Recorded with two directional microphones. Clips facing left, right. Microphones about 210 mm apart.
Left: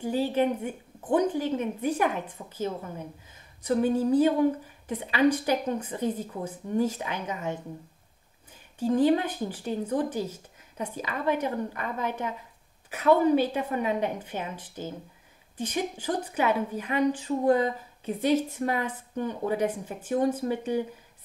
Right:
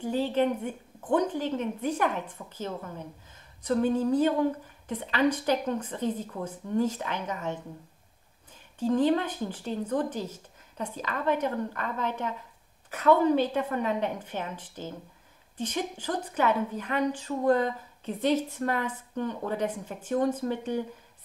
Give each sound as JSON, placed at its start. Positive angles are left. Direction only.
{"t": 0.0, "sound": "a woman's voice", "side_deg": 10}
{"t": 8.8, "sound": "a woman's voice", "side_deg": 10}